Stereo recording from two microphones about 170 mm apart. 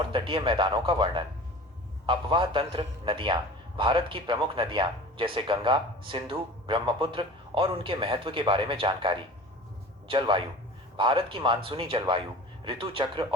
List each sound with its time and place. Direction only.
0.0 s speech: 30° right (ahead or behind)